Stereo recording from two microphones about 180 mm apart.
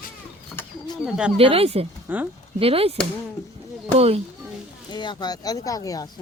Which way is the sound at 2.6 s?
35° right (ahead or behind).